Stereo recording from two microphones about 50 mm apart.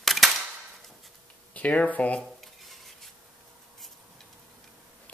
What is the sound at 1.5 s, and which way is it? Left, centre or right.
Speech, left.